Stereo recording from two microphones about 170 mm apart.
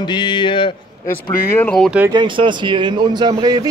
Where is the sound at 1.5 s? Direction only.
5° left (ahead or behind).